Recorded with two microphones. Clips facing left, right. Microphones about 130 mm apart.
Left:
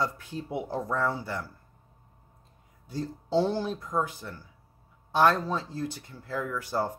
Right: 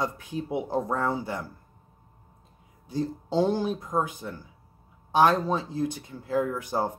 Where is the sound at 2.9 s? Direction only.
15° right (ahead or behind).